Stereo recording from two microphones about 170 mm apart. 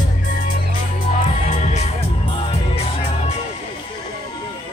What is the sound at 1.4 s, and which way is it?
Music, 45° left (ahead or behind).